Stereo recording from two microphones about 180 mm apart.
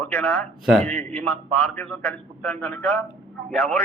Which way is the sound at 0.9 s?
10° left (ahead or behind).